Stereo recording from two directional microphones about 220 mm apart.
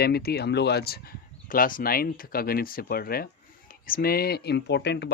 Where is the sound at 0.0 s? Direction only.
45° left (ahead or behind).